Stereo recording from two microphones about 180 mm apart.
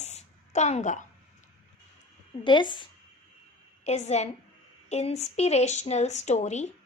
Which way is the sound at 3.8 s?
35° left (ahead or behind).